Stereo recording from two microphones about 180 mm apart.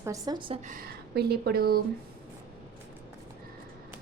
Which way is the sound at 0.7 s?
55° right (ahead or behind).